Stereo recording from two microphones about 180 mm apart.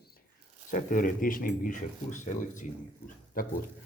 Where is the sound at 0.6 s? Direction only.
45° left (ahead or behind).